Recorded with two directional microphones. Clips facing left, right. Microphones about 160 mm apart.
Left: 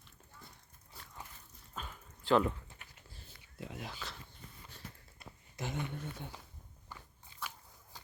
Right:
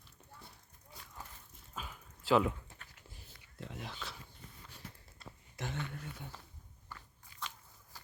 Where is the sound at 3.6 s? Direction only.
5° left (ahead or behind).